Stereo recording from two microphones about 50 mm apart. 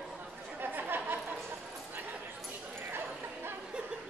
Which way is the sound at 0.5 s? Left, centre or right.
Right.